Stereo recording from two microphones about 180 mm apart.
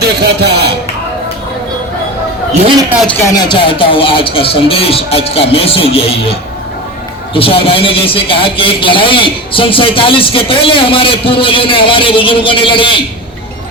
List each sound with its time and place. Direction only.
0.0 s a sound: 65° right (ahead or behind)
2.5 s a man's voice: 30° right (ahead or behind)
3.1 s speech: 15° left (ahead or behind); by 6.3 s 30° left (ahead or behind)
7.3 s a man's voice: 30° left (ahead or behind)